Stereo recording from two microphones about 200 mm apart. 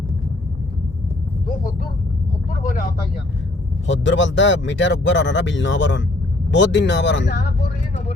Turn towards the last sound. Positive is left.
turn(degrees=65)  # may be behind; listen again after turning